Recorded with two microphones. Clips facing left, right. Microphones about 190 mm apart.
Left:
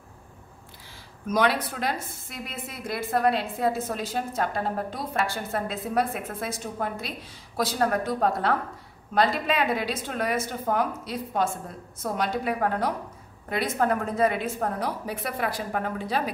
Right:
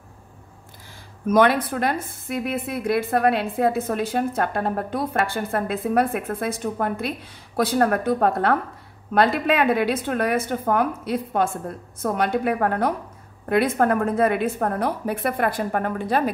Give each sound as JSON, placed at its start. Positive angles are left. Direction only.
{"t": 1.2, "sound": "a woman's voice", "side_deg": -55}